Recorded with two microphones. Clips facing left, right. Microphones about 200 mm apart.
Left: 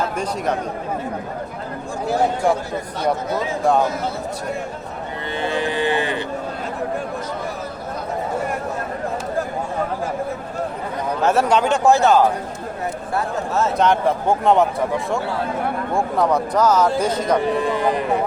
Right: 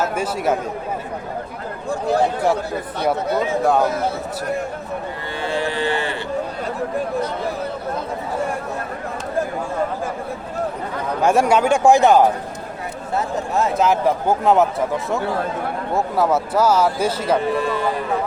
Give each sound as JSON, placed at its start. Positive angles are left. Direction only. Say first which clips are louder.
{"t": 0.0, "sound": "speech", "louder": "right 2 dB", "side_deg": -5}
{"t": 5.4, "sound": "cattle", "louder": "left 1 dB", "side_deg": 20}
{"t": 11.2, "sound": "speech", "louder": "right 2 dB", "side_deg": -10}
{"t": 13.7, "sound": "speech", "louder": "even", "side_deg": -5}
{"t": 17.3, "sound": "speech", "louder": "left 1 dB", "side_deg": 15}